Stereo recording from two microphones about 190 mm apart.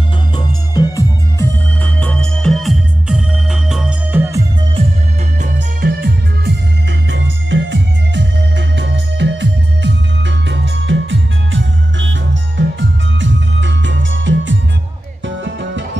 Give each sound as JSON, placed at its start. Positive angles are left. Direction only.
{"t": 0.7, "sound": "music", "side_deg": 20}
{"t": 1.8, "sound": "music", "side_deg": 5}
{"t": 5.4, "sound": "music", "side_deg": -45}
{"t": 6.0, "sound": "music", "side_deg": -65}